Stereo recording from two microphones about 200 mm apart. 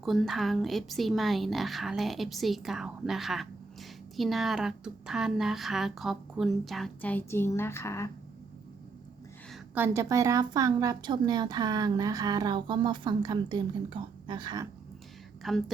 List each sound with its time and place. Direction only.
0.0 s a woman's voice: centre (ahead or behind)
9.7 s a woman's voice: 10° right (ahead or behind)
15.4 s a woman's voice: centre (ahead or behind)